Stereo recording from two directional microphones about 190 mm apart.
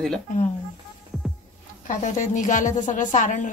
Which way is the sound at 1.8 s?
40° left (ahead or behind).